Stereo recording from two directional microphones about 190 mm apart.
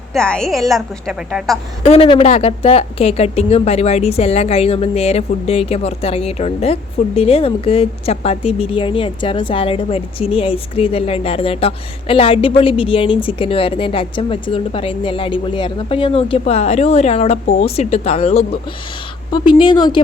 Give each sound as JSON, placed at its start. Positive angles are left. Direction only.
{"t": 0.1, "sound": "a woman's voice", "side_deg": 5}
{"t": 1.8, "sound": "a woman's voice", "side_deg": 30}